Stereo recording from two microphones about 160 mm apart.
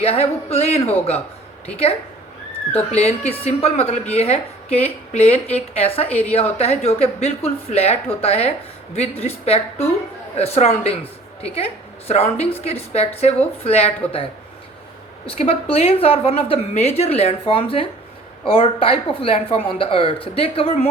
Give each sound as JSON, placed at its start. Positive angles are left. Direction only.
{"t": 0.0, "sound": "a woman's voice", "side_deg": 40}
{"t": 2.7, "sound": "a woman's voice", "side_deg": 40}
{"t": 6.1, "sound": "a woman's voice", "side_deg": 10}
{"t": 6.3, "sound": "a woman's voice", "side_deg": 40}
{"t": 15.3, "sound": "a woman's voice", "side_deg": 35}